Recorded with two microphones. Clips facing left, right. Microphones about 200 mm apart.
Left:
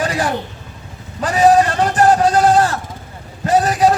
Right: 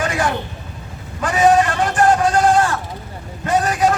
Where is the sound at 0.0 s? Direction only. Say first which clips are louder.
Left 1 dB; 35° left (ahead or behind).